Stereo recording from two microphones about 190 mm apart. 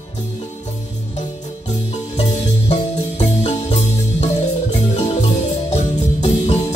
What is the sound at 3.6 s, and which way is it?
Music, 35° left (ahead or behind).